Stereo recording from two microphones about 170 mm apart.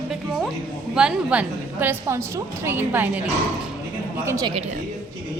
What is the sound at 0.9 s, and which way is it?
A woman's voice, 5° right (ahead or behind).